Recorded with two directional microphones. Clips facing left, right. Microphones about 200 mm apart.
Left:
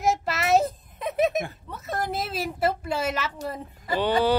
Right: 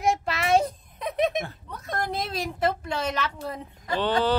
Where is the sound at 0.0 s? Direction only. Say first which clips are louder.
Even; centre (ahead or behind).